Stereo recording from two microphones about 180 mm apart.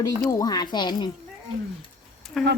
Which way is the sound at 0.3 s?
20° left (ahead or behind).